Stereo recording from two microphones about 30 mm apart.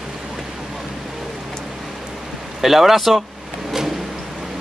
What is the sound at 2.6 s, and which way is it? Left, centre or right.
Speech, centre.